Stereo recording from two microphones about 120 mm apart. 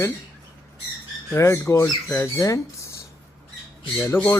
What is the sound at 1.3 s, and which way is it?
Speech, 20° left (ahead or behind).